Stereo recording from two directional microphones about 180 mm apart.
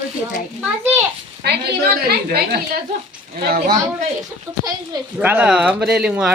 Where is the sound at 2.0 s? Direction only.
60° right (ahead or behind).